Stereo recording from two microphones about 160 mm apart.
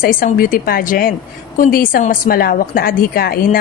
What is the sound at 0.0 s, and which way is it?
A woman's voice, 60° left (ahead or behind).